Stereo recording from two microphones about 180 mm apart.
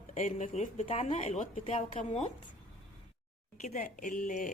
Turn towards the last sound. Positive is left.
turn(degrees=45)  # may be behind; listen again after turning